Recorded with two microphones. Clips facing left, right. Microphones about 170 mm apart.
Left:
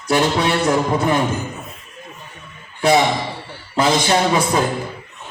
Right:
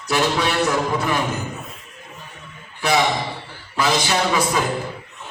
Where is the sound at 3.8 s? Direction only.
25° left (ahead or behind).